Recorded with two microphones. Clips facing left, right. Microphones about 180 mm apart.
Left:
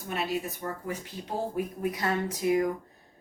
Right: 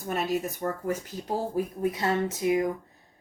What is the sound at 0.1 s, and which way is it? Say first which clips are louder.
Speech: right 3 dB; 45° right (ahead or behind).